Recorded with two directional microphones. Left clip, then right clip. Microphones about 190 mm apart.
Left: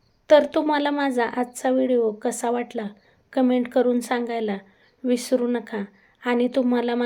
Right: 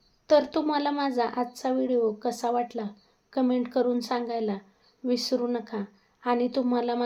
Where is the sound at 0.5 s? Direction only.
10° left (ahead or behind).